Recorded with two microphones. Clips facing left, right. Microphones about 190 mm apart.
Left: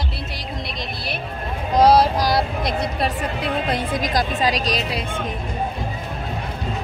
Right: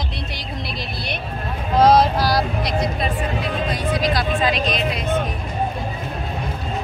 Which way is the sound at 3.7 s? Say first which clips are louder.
Right 2 dB; 55° left (ahead or behind).